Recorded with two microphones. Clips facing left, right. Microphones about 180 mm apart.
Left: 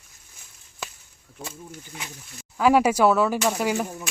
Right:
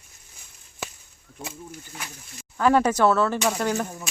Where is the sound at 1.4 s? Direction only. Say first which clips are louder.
Even; centre (ahead or behind).